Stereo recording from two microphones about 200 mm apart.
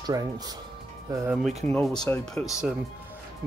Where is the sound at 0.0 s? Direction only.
20° right (ahead or behind).